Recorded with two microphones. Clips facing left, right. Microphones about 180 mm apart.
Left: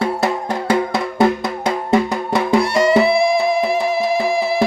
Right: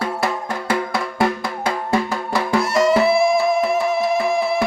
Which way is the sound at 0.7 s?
20° left (ahead or behind).